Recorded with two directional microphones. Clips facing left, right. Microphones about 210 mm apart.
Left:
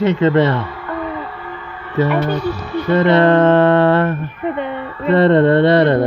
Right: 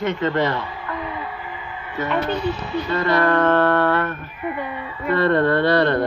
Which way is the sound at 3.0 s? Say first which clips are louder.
Left 7 dB; 25° left (ahead or behind).